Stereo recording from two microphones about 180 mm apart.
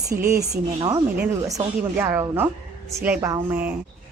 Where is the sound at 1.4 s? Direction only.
15° right (ahead or behind).